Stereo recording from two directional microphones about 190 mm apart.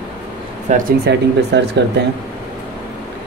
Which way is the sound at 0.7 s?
45° right (ahead or behind).